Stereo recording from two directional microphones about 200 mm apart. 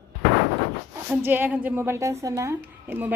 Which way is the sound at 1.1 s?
10° right (ahead or behind).